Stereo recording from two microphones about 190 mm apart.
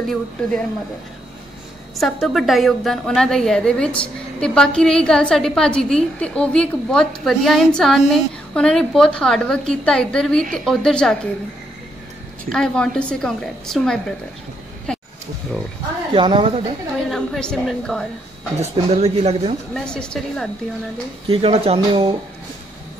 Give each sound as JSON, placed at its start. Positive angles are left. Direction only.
{"t": 0.0, "sound": "a woman's voice", "side_deg": 0}
{"t": 2.0, "sound": "a woman's voice", "side_deg": 0}
{"t": 12.4, "sound": "a woman's voice", "side_deg": 5}
{"t": 14.9, "sound": "a sound", "side_deg": 5}
{"t": 16.2, "sound": "a woman's voice", "side_deg": -25}
{"t": 17.1, "sound": "a woman's voice", "side_deg": 5}
{"t": 18.6, "sound": "speech", "side_deg": -35}
{"t": 19.7, "sound": "a woman's voice", "side_deg": 5}
{"t": 21.3, "sound": "speech", "side_deg": -30}